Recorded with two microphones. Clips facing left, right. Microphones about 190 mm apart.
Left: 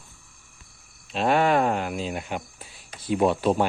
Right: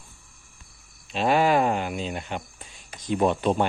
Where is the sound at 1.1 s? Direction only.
Centre (ahead or behind).